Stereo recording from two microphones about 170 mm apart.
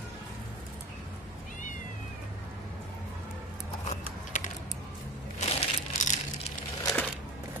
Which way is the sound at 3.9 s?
45° left (ahead or behind).